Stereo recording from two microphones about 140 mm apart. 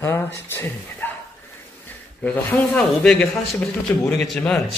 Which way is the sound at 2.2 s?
10° left (ahead or behind).